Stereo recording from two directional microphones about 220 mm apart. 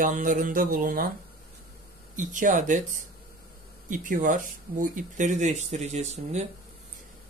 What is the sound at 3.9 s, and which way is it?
Speech, 35° right (ahead or behind).